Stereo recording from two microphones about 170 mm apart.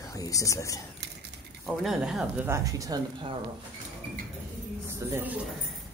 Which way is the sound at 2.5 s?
20° right (ahead or behind).